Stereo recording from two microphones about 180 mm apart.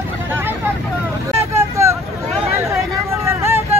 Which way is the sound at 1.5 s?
15° right (ahead or behind).